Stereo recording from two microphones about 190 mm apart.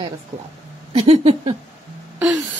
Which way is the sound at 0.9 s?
30° right (ahead or behind).